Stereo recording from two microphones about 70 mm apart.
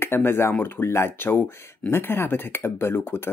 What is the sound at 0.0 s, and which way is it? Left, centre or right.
Speech, left.